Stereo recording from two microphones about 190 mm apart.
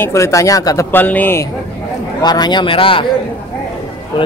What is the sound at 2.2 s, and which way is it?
Speech, 20° left (ahead or behind).